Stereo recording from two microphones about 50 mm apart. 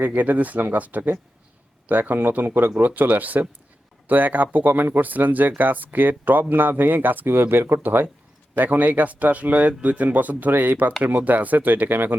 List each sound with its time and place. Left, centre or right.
0.0 s speech: right
7.8 s speech: right